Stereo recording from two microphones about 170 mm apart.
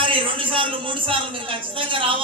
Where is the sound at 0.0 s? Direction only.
30° right (ahead or behind).